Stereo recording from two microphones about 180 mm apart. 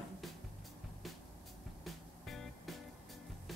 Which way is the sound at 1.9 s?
Centre (ahead or behind).